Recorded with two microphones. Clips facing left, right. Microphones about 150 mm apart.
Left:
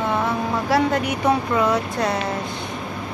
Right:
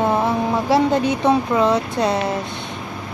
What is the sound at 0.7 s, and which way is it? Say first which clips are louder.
Speech: right 3 dB; 25° right (ahead or behind).